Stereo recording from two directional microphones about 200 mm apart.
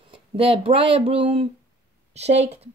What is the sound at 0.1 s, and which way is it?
A woman's voice, 30° right (ahead or behind).